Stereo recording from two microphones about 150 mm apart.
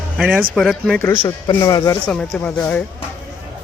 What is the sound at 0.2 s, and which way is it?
Speech, 5° right (ahead or behind).